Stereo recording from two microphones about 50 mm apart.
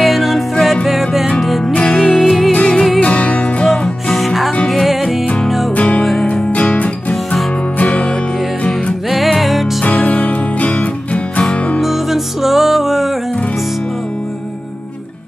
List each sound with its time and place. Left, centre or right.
0.0 s music: centre
1.9 s music: centre
2.5 s music: centre
3.6 s music: centre
4.1 s music: centre
5.8 s music: left
9.1 s music: centre
9.8 s music: left
11.8 s music: centre